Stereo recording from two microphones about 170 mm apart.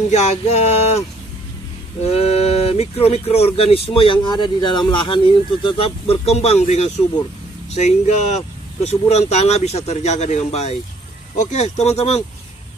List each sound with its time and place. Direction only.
0.1 s speech: 40° left (ahead or behind)
2.0 s speech: 35° left (ahead or behind)